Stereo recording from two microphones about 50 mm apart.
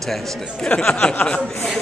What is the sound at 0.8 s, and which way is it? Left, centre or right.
Speech, centre.